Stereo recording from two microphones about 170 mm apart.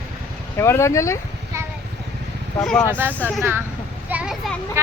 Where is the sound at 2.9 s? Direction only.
10° right (ahead or behind).